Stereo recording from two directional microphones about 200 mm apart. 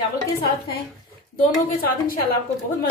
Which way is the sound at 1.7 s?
45° left (ahead or behind).